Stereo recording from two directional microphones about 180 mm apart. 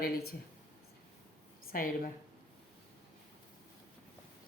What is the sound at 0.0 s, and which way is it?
Speech, 60° left (ahead or behind).